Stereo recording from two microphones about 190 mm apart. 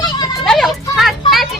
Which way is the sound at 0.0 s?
20° left (ahead or behind).